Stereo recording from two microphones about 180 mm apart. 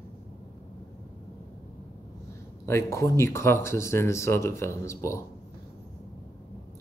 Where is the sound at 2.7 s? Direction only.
15° left (ahead or behind).